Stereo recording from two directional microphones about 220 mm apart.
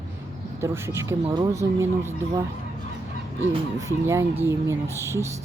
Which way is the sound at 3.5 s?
15° right (ahead or behind).